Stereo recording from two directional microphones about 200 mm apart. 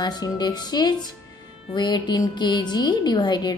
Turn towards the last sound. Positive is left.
turn(degrees=20)  # may be behind; listen again after turning